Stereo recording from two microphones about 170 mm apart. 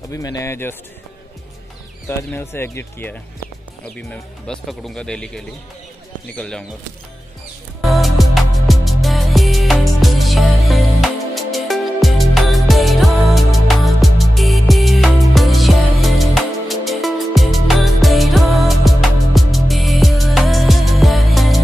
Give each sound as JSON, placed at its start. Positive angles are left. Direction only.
{"t": 0.1, "sound": "speech", "side_deg": 20}
{"t": 2.0, "sound": "speech", "side_deg": 15}
{"t": 7.8, "sound": "music", "side_deg": 0}